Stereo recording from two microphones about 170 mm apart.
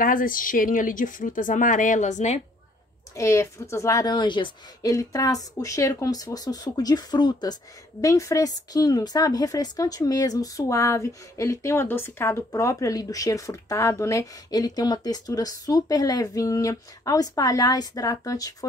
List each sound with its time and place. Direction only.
0.0 s speech: 55° left (ahead or behind)
3.2 s speech: 15° left (ahead or behind)